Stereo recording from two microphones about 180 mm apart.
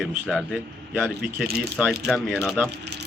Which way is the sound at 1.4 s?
60° right (ahead or behind).